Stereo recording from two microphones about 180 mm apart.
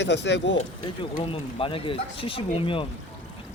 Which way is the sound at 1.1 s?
30° left (ahead or behind).